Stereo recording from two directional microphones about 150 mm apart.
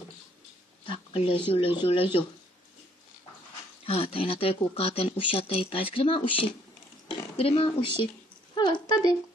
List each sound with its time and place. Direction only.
0.8 s speech: 40° left (ahead or behind)
3.8 s speech: 40° left (ahead or behind)
8.5 s a sound: 30° left (ahead or behind)